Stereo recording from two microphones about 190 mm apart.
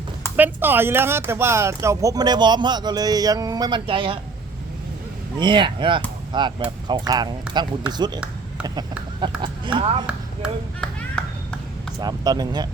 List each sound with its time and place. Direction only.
0.3 s speech: 10° right (ahead or behind); by 4.2 s 25° right (ahead or behind)
5.4 s speech: 25° right (ahead or behind)
9.4 s speech: 25° right (ahead or behind)
10.1 s ping: centre (ahead or behind)
11.9 s speech: 20° right (ahead or behind)